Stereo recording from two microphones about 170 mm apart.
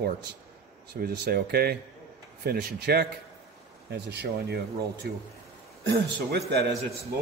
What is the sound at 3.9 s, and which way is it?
Speech, 80° right.